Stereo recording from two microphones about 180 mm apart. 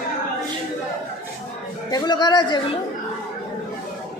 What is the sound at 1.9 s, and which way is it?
Speech, 25° left (ahead or behind).